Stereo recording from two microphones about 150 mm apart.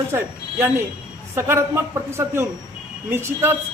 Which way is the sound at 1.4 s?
15° right (ahead or behind).